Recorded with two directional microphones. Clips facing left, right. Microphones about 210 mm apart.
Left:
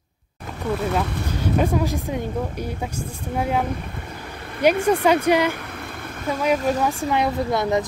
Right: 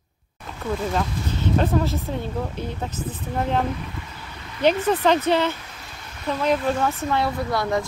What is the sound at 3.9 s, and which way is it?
Vehicle, 55° left (ahead or behind).